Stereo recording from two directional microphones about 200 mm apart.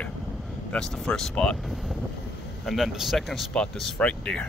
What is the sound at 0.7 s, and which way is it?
Speech, 5° left (ahead or behind).